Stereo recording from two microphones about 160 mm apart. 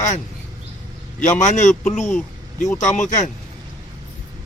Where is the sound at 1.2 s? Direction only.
50° left (ahead or behind).